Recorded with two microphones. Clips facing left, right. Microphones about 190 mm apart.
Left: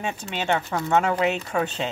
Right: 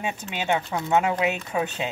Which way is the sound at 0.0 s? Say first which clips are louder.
Left 1 dB; 10° right (ahead or behind).